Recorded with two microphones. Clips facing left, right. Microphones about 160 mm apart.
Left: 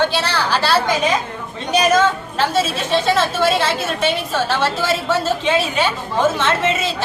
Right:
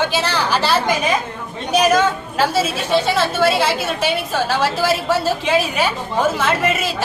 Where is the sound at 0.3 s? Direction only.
15° right (ahead or behind).